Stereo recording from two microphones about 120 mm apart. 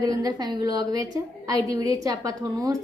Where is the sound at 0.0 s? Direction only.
35° right (ahead or behind).